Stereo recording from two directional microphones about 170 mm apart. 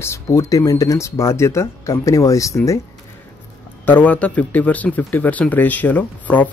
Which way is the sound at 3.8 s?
10° left (ahead or behind).